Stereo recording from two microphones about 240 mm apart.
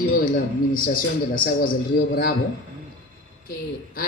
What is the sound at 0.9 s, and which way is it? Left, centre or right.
A man's voice, left.